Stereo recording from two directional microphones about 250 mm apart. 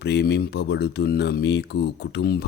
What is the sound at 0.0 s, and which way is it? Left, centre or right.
Speech, left.